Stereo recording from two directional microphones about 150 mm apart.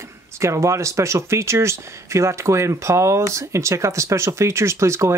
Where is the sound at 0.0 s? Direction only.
20° right (ahead or behind).